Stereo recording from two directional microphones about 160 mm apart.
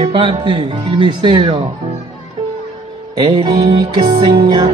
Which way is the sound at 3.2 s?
30° right (ahead or behind).